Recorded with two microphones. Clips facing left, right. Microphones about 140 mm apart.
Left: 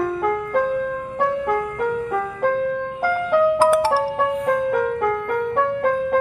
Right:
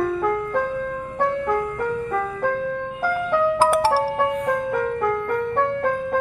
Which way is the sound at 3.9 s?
10° left (ahead or behind).